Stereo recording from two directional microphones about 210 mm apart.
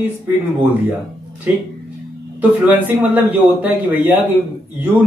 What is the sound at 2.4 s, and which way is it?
Speech, 10° right (ahead or behind).